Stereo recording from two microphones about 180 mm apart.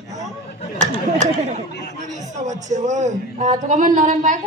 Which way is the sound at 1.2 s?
40° right (ahead or behind).